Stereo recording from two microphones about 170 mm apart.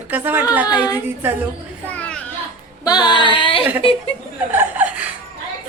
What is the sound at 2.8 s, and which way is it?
Female singing, 25° left (ahead or behind).